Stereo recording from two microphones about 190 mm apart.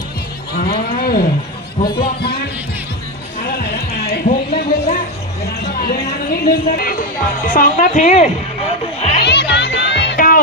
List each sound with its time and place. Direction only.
0.5 s speech: 50° left (ahead or behind)
1.8 s a woman's voice: 35° left (ahead or behind)
3.4 s music: 55° left (ahead or behind)
5.6 s a sound: 55° left (ahead or behind)
6.4 s a woman's voice: 50° left (ahead or behind)
9.0 s music: 35° left (ahead or behind)
9.2 s music: 65° left (ahead or behind)
10.2 s music: 45° left (ahead or behind)